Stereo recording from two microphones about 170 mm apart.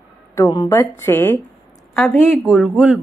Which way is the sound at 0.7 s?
15° left (ahead or behind).